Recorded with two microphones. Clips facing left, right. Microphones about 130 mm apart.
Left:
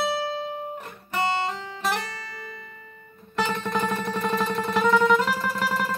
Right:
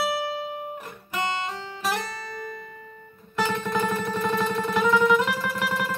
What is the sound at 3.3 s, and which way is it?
Music, 5° right (ahead or behind).